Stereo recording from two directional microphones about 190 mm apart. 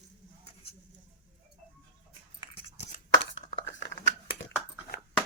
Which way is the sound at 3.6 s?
65° left (ahead or behind).